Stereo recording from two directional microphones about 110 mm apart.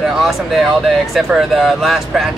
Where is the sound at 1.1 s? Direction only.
Centre (ahead or behind).